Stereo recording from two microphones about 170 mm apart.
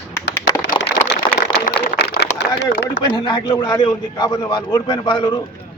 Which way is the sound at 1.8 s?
70° left (ahead or behind).